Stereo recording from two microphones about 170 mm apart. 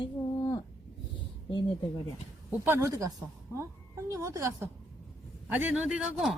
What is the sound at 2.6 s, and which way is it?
A woman's voice, 15° right (ahead or behind).